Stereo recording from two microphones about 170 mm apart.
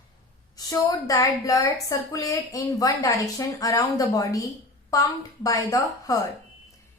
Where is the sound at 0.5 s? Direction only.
20° left (ahead or behind).